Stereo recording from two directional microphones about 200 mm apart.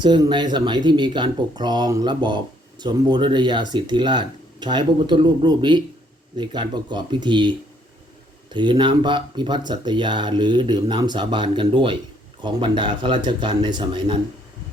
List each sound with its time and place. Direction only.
0.0 s speech: 20° right (ahead or behind)
8.5 s speech: 25° right (ahead or behind)